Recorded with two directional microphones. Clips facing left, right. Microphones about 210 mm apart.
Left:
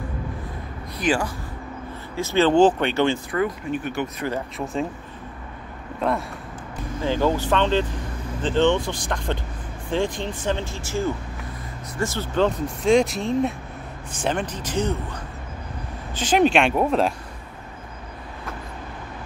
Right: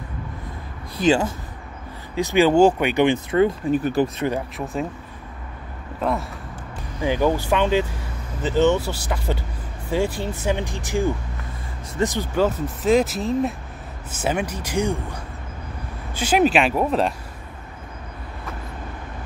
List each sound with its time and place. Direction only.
0.9 s speech: 25° right (ahead or behind)
2.1 s speech: 15° right (ahead or behind)
3.7 s speech: 35° right (ahead or behind)
5.9 s speech: centre (ahead or behind)
7.0 s speech: 15° right (ahead or behind)
16.2 s speech: 5° right (ahead or behind)